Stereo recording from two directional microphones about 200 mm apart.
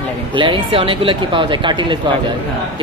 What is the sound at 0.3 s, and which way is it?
Speech, 25° right (ahead or behind).